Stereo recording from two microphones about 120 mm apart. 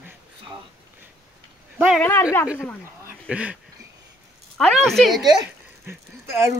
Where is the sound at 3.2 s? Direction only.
10° right (ahead or behind).